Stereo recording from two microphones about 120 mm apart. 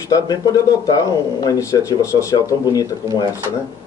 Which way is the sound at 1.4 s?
30° left (ahead or behind).